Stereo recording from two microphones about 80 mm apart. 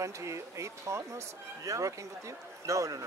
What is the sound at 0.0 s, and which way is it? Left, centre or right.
Speech, right.